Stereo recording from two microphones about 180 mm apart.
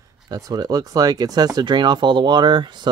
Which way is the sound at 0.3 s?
20° right (ahead or behind).